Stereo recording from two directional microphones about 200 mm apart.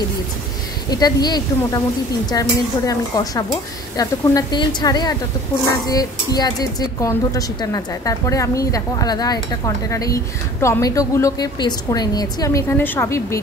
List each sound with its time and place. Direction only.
0.8 s a woman's voice: 20° left (ahead or behind)